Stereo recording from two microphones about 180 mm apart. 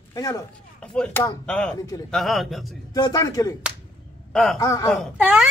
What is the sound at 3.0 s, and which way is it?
Speech, 20° left (ahead or behind).